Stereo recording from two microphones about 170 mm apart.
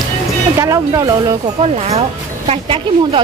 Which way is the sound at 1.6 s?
35° right (ahead or behind).